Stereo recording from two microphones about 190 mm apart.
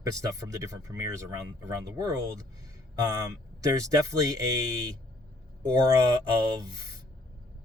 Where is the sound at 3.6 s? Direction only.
15° right (ahead or behind).